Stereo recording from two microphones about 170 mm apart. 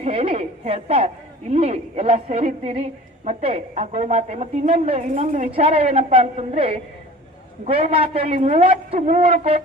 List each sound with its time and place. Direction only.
0.0 s a woman's voice: 35° right (ahead or behind)